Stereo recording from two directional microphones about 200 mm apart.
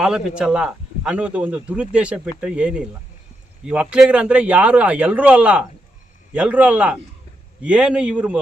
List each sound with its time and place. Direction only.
0.0 s a man's voice: 5° right (ahead or behind)